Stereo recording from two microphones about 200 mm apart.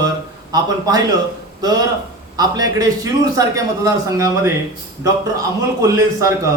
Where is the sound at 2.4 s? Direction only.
20° right (ahead or behind).